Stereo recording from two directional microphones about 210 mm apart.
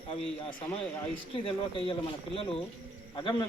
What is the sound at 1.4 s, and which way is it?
Speech, 25° left (ahead or behind).